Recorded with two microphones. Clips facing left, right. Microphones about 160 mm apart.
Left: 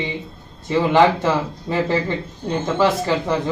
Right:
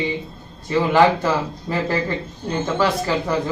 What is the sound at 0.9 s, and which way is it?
A man's voice, 20° left (ahead or behind).